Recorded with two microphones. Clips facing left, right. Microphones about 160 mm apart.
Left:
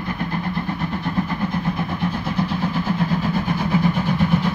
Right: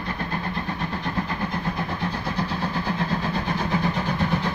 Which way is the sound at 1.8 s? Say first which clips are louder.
Left 4 dB; 15° left (ahead or behind).